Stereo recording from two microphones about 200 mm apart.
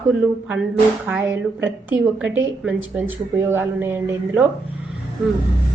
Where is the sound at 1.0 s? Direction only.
10° right (ahead or behind).